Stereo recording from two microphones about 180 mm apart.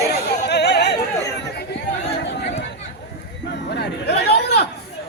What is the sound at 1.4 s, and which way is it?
Chatter, 70° left (ahead or behind).